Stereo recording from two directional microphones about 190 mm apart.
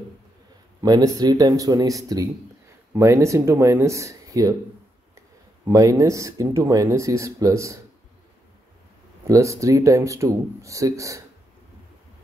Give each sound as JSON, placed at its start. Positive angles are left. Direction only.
{"t": 0.7, "sound": "speech", "side_deg": -20}
{"t": 5.7, "sound": "speech", "side_deg": -20}
{"t": 9.3, "sound": "speech", "side_deg": -15}